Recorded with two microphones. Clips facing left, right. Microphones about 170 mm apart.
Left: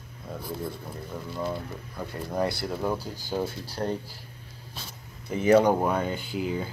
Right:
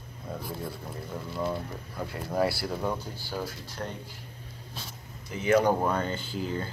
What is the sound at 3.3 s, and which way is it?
Speech, 25° left (ahead or behind).